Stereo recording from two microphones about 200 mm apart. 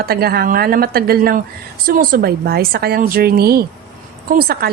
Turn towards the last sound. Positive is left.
turn(degrees=-50)  # may be behind; listen again after turning